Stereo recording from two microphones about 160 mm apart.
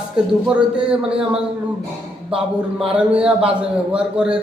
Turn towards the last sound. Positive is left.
turn(degrees=-5)  # may be behind; listen again after turning